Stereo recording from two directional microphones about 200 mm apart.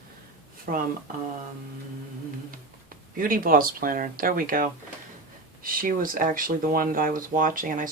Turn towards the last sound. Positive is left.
turn(degrees=-45)  # may be behind; listen again after turning